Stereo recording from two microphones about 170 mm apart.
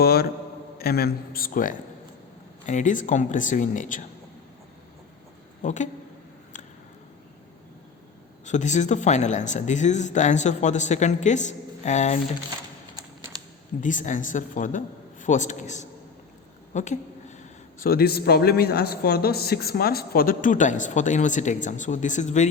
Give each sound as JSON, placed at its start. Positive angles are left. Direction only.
{"t": 0.0, "sound": "mantra", "side_deg": 65}
{"t": 0.8, "sound": "a man's voice", "side_deg": 65}
{"t": 5.6, "sound": "a man's voice", "side_deg": 45}
{"t": 8.4, "sound": "a man's voice", "side_deg": 45}
{"t": 13.8, "sound": "a man's voice", "side_deg": 50}
{"t": 16.7, "sound": "a sound", "side_deg": 45}
{"t": 17.7, "sound": "a man's voice", "side_deg": 60}